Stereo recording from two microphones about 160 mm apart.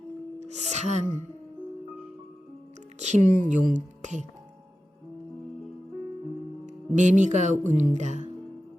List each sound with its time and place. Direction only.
0.3 s a woman's voice: 45° right (ahead or behind)
3.0 s speech: 50° right (ahead or behind)
6.7 s speech: 50° right (ahead or behind)